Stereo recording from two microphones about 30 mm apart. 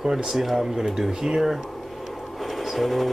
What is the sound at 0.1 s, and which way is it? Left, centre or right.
Speech, centre.